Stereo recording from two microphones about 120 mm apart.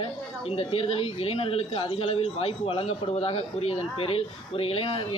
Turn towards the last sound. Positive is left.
turn(degrees=50)  # may be behind; listen again after turning